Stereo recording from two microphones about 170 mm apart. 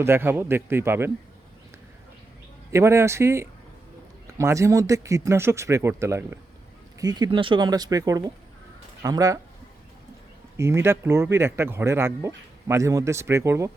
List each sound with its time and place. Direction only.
0.0 s speech: 15° right (ahead or behind)
2.7 s speech: 15° right (ahead or behind)
10.6 s speech: 15° right (ahead or behind)